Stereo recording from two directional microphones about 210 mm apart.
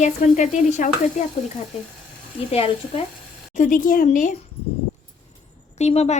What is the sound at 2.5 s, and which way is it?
Speech, 30° left (ahead or behind).